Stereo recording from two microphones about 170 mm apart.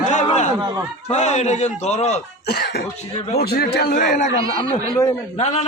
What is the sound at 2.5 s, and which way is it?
Speech, 75° left (ahead or behind).